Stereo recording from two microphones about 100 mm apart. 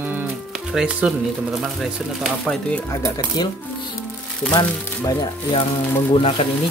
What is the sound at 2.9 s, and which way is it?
Speech, 30° left (ahead or behind).